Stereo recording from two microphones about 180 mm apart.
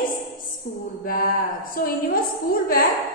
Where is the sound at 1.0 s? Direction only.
55° left (ahead or behind).